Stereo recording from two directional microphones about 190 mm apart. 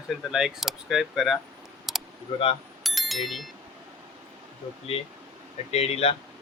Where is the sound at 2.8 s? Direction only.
Centre (ahead or behind).